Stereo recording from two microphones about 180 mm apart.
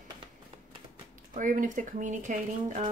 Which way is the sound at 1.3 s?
45° right (ahead or behind).